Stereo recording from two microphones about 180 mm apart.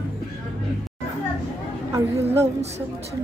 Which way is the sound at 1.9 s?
15° right (ahead or behind).